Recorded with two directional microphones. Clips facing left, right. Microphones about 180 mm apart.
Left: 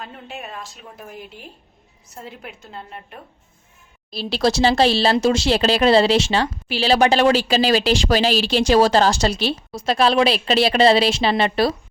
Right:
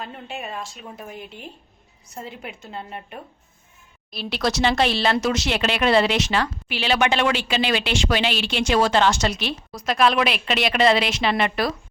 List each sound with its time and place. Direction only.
0.0 s a woman's voice: centre (ahead or behind)
4.1 s speech: 30° left (ahead or behind)